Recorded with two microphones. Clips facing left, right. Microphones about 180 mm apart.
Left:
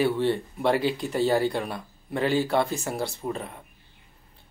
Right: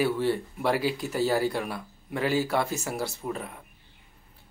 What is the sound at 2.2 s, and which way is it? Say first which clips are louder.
Speech: left 2 dB; 5° right (ahead or behind).